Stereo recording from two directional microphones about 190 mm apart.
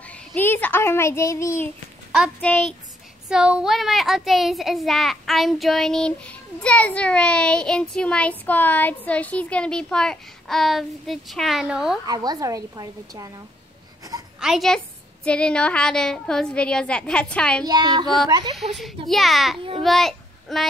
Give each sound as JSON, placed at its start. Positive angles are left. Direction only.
{"t": 0.0, "sound": "a sound", "side_deg": 5}
{"t": 2.4, "sound": "speech", "side_deg": 5}
{"t": 3.3, "sound": "a child's voice", "side_deg": -5}
{"t": 12.1, "sound": "a woman's voice", "side_deg": -20}
{"t": 14.4, "sound": "a child's voice", "side_deg": 0}
{"t": 17.6, "sound": "a woman's voice", "side_deg": -20}
{"t": 18.6, "sound": "a child's voice", "side_deg": 0}